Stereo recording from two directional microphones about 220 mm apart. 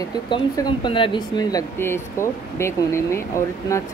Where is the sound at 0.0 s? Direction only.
20° left (ahead or behind).